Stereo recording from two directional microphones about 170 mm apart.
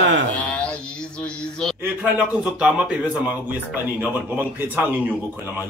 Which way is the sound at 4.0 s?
10° right (ahead or behind).